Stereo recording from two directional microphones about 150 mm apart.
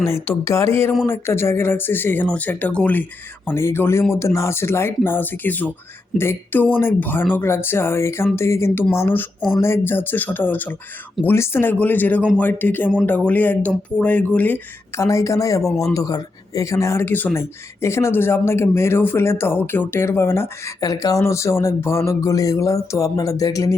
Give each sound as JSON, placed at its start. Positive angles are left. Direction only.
{"t": 0.1, "sound": "speech", "side_deg": 20}